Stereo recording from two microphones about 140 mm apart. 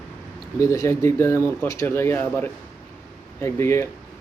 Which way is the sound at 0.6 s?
20° left (ahead or behind).